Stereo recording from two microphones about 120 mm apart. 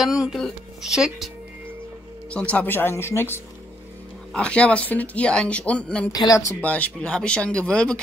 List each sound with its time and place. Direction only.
0.0 s speech: 5° right (ahead or behind)
2.3 s speech: 10° left (ahead or behind)
4.3 s speech: 10° left (ahead or behind)
6.1 s speech: 30° left (ahead or behind)
6.6 s speech: 10° left (ahead or behind)